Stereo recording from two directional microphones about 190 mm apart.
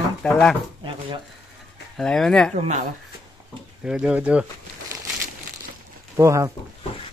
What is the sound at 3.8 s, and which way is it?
Speech, 5° right (ahead or behind).